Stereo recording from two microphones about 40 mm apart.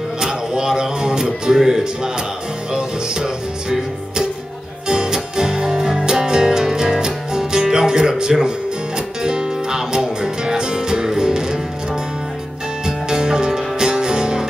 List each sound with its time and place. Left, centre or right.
0.2 s music: centre
4.8 s music: centre